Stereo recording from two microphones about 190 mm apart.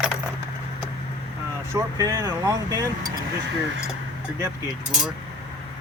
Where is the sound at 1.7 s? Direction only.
20° right (ahead or behind).